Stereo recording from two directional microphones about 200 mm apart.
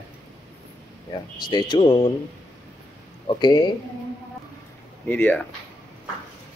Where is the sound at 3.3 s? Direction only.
20° left (ahead or behind).